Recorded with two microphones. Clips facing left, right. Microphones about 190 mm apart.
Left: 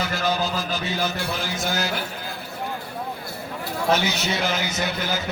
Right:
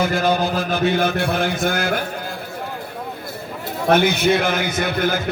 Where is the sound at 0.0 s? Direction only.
50° right (ahead or behind).